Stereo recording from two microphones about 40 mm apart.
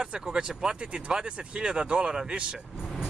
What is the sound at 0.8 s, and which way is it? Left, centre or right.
Speech, right.